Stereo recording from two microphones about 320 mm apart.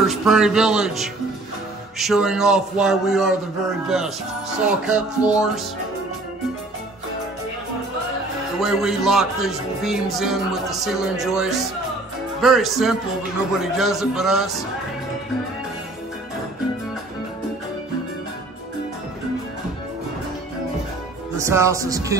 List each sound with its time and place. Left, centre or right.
0.0 s speech: centre
4.6 s speech: centre
8.5 s speech: centre
21.4 s speech: centre